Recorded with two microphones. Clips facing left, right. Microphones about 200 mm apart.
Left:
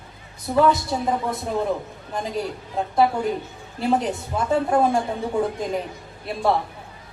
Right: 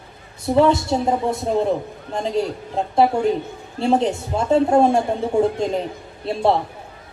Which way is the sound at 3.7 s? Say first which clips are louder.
Right 4 dB; 25° right (ahead or behind).